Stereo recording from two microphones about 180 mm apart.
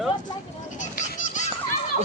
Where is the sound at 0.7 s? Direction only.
45° left (ahead or behind).